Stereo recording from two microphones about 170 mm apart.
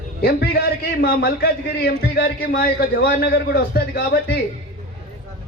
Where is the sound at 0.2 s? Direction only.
65° left (ahead or behind).